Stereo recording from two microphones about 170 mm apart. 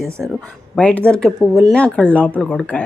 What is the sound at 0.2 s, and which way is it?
Speech, 5° left (ahead or behind).